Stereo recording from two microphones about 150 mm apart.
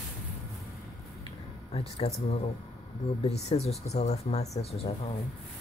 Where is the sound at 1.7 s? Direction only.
40° left (ahead or behind).